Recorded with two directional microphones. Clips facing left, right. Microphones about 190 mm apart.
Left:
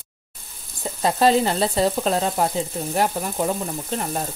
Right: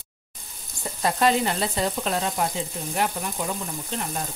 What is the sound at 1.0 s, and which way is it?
Frying, 35° left (ahead or behind).